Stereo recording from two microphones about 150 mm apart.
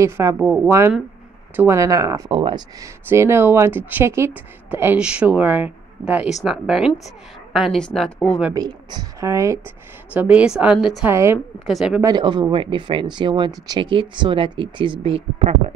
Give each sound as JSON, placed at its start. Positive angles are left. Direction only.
{"t": 0.0, "sound": "speech", "side_deg": -20}
{"t": 2.3, "sound": "speech", "side_deg": -35}
{"t": 2.8, "sound": "a woman's voice", "side_deg": -20}
{"t": 8.5, "sound": "speech", "side_deg": -25}
{"t": 10.1, "sound": "speech", "side_deg": -10}
{"t": 11.1, "sound": "speech", "side_deg": -20}
{"t": 11.6, "sound": "a woman's voice", "side_deg": -5}
{"t": 12.0, "sound": "speech", "side_deg": -30}